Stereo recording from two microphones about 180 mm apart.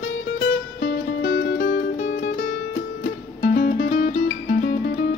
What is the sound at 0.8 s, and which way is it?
Music, 70° left (ahead or behind).